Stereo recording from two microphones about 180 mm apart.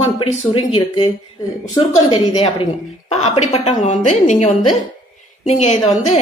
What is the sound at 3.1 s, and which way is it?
Speech, 40° left (ahead or behind).